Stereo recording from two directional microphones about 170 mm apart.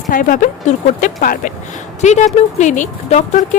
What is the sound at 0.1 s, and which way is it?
A woman's voice, 55° left (ahead or behind).